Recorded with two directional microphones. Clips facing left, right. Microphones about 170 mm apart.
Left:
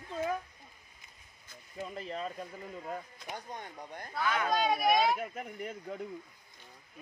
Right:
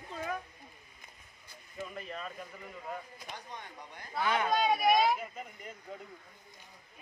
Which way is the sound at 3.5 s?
50° left (ahead or behind).